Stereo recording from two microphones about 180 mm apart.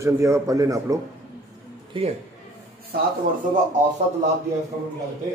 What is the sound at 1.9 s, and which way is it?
Speech, 30° right (ahead or behind).